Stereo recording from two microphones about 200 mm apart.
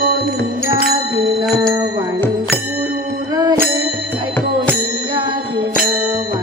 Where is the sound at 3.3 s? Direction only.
20° right (ahead or behind).